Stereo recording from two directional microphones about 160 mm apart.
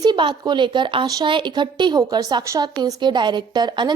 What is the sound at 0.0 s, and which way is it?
A woman's voice, 30° right (ahead or behind).